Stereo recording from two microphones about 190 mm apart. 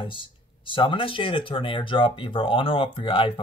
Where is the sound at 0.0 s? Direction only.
25° left (ahead or behind).